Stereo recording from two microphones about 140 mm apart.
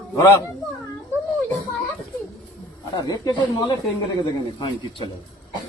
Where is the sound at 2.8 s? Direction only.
25° left (ahead or behind).